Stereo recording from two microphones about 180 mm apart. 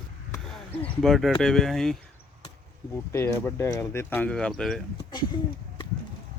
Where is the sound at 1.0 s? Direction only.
Centre (ahead or behind).